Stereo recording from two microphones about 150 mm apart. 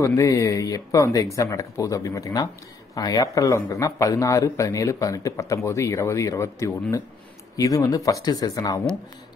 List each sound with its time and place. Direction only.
0.0 s speech: 20° left (ahead or behind)